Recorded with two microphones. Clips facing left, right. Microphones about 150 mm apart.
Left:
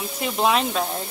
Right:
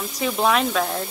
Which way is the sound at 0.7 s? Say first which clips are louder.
Right 2 dB; 15° left (ahead or behind).